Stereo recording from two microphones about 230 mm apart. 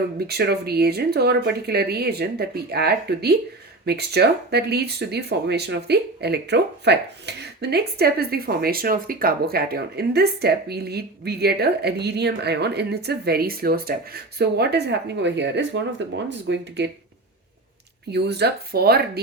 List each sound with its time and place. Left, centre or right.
0.3 s speech: right
18.1 s speech: right